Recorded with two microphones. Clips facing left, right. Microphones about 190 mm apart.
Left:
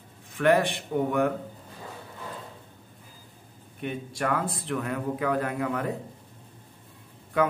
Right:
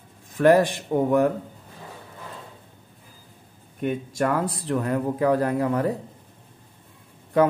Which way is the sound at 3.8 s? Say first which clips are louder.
Right 6 dB; 45° right (ahead or behind).